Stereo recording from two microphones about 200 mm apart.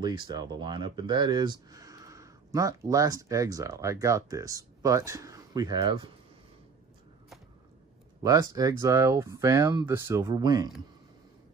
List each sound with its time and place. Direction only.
0.0 s speech: 20° right (ahead or behind)
8.2 s speech: 20° right (ahead or behind)